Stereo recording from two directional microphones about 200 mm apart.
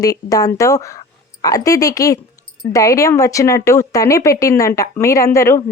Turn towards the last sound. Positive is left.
turn(degrees=15)  # may be behind; listen again after turning